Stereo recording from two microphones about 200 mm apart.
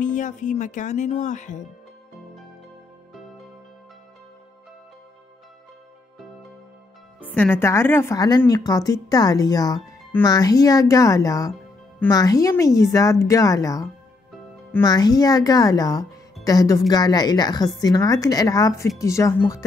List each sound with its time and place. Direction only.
0.0 s speech: 40° left (ahead or behind)
7.2 s speech: 10° left (ahead or behind)